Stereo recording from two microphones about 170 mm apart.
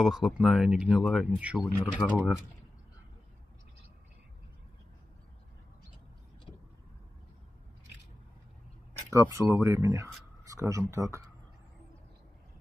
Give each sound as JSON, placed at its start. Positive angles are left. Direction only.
{"t": 0.0, "sound": "speech", "side_deg": 0}
{"t": 9.1, "sound": "speech", "side_deg": -20}